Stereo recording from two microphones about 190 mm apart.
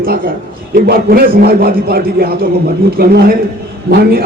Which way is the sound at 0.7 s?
50° right (ahead or behind).